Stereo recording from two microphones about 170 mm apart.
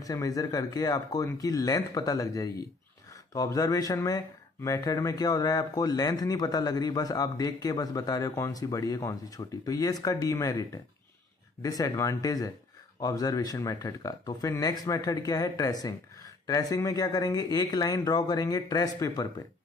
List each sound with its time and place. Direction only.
0.0 s a man's voice: 20° left (ahead or behind)